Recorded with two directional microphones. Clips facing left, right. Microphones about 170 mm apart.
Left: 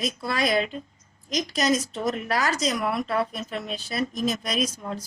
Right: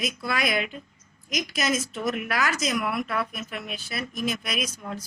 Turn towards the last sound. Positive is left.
turn(degrees=30)  # may be behind; listen again after turning